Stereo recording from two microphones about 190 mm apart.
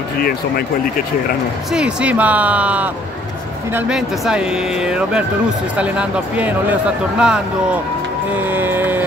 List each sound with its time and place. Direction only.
0.2 s speech: 55° left (ahead or behind)
1.7 s speech: 5° right (ahead or behind)
8.4 s music: 10° right (ahead or behind)